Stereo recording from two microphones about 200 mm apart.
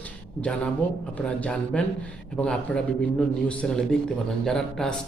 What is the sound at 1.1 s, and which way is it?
A man's voice, 5° left (ahead or behind).